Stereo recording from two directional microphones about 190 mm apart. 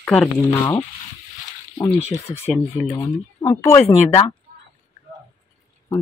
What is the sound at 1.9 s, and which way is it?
Speech, 35° left (ahead or behind).